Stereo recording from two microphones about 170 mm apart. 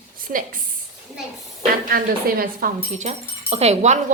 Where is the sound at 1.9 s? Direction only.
60° right (ahead or behind).